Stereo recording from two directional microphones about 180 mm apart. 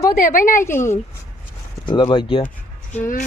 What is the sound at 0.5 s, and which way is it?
Speech, 15° left (ahead or behind).